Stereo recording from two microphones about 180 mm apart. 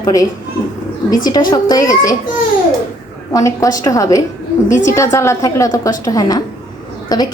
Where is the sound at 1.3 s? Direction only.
25° left (ahead or behind).